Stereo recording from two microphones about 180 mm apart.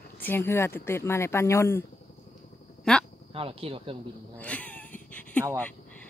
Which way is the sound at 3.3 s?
30° right (ahead or behind).